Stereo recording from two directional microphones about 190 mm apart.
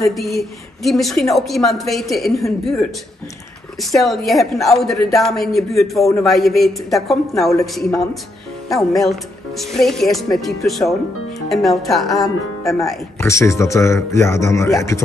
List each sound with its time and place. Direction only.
0.1 s speech: centre (ahead or behind)
13.2 s speech: 15° left (ahead or behind)